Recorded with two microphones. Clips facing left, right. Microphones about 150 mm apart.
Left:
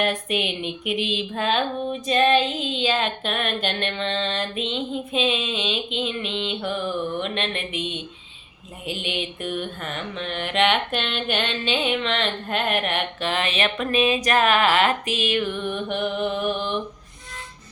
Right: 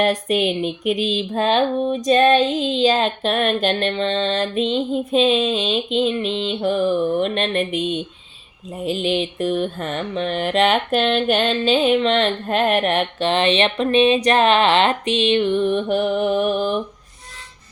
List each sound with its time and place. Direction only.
0.0 s female singing: 40° right (ahead or behind)
14.3 s music: 25° right (ahead or behind)